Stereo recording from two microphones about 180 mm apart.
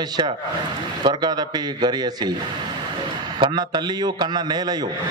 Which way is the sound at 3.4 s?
25° right (ahead or behind).